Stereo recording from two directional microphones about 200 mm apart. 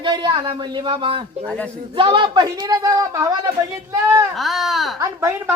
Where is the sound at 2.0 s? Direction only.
25° right (ahead or behind).